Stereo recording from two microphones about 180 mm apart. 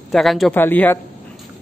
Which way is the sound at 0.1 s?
Centre (ahead or behind).